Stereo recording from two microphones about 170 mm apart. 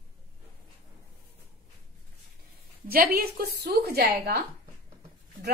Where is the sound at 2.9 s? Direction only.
60° right (ahead or behind).